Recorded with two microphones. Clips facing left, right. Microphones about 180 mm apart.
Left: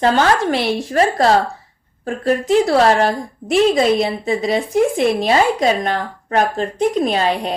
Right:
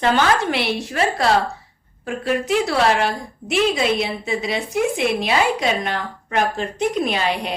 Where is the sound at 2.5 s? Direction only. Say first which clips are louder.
Left 6 dB; 40° left (ahead or behind).